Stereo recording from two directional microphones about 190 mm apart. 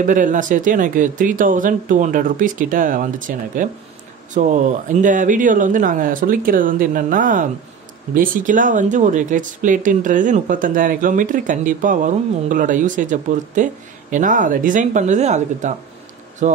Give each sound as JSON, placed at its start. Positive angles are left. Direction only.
{"t": 0.0, "sound": "speech", "side_deg": -45}